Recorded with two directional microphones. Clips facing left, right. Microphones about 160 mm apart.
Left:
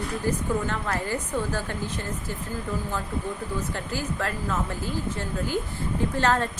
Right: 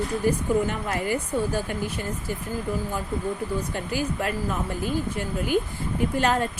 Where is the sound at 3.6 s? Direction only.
15° right (ahead or behind).